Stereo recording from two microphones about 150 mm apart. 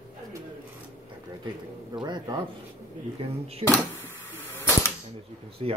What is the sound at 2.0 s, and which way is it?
Speech, 30° right (ahead or behind).